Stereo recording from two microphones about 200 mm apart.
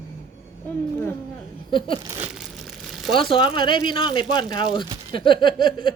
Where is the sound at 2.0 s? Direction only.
15° right (ahead or behind).